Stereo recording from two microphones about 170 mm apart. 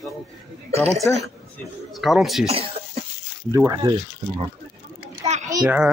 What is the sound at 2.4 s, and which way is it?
Cough, 35° right (ahead or behind).